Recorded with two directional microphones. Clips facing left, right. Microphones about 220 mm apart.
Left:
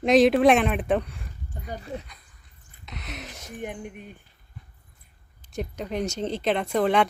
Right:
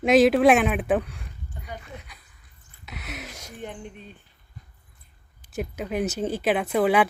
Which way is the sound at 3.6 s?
15° left (ahead or behind).